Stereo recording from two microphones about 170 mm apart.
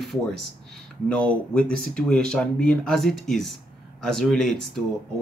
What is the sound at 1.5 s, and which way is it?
Speech, 5° left (ahead or behind).